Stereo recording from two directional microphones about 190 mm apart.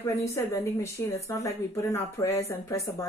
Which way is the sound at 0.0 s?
15° left (ahead or behind).